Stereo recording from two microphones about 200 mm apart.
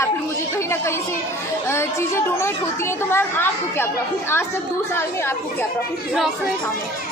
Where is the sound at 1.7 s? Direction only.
15° left (ahead or behind).